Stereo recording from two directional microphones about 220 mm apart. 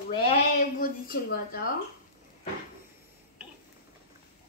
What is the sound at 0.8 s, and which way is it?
Speech, 40° left (ahead or behind).